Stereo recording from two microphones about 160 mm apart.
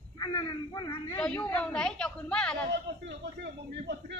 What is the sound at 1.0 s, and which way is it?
A man's voice, 10° left (ahead or behind).